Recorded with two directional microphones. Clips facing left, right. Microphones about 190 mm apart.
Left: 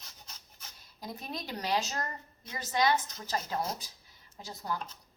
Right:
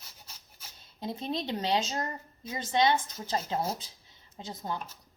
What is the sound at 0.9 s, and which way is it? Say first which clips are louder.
Speech: right 7 dB; 25° right (ahead or behind).